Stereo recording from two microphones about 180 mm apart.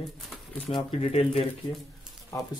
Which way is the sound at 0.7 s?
35° left (ahead or behind).